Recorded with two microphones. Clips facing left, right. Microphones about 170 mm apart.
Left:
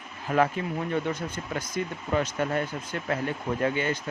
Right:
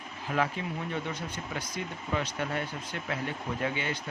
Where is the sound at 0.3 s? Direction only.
50° left (ahead or behind).